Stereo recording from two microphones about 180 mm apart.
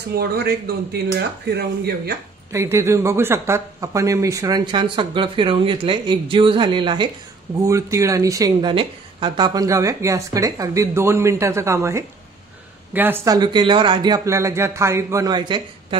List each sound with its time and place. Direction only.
0.1 s speech: 60° right (ahead or behind)
2.5 s a woman's voice: 15° right (ahead or behind)